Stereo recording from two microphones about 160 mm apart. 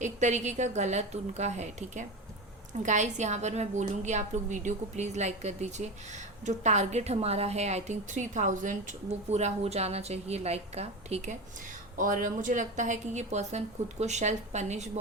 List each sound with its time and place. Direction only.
0.0 s a woman's voice: 50° right (ahead or behind)
11.9 s a woman's voice: 55° right (ahead or behind)